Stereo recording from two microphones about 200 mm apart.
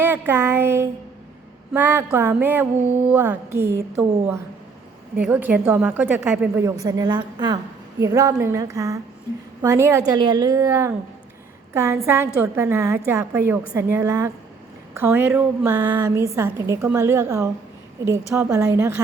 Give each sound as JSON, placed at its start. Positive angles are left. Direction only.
{"t": 0.0, "sound": "a woman's voice", "side_deg": -10}